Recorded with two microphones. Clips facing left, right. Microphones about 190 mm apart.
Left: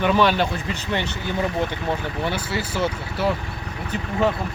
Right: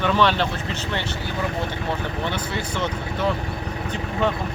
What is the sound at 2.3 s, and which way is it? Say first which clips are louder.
Speech: left 1 dB; 10° left (ahead or behind).